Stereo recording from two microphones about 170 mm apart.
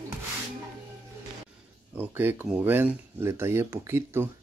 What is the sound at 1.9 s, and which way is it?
Speech, 10° right (ahead or behind).